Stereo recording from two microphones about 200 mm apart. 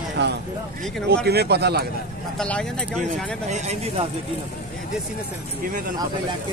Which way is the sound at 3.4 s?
35° right (ahead or behind).